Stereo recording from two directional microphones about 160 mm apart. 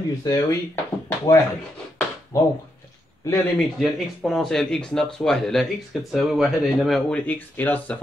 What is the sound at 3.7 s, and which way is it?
Speech, centre (ahead or behind).